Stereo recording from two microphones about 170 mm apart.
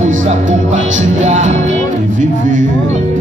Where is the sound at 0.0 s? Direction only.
45° right (ahead or behind).